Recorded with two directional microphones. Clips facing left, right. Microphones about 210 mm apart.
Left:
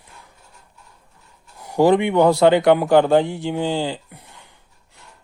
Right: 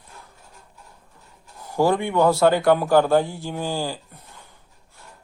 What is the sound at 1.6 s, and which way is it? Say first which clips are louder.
A man's voice: left 5 dB; 20° left (ahead or behind).